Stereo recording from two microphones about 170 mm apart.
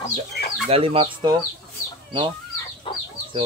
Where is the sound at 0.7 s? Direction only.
35° right (ahead or behind).